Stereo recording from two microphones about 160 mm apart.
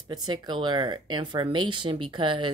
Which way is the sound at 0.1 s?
25° right (ahead or behind).